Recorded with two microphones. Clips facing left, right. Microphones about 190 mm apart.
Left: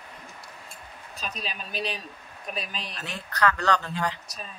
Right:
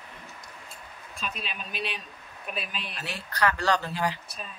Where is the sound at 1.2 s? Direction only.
40° left (ahead or behind).